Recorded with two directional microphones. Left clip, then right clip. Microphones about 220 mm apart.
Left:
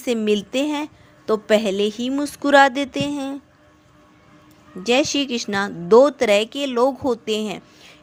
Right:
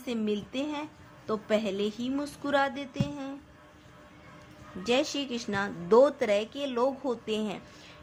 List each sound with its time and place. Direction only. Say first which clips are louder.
0.0 s a woman's voice: left 12 dB; 40° left (ahead or behind)
4.8 s speech: left 9 dB; 25° left (ahead or behind)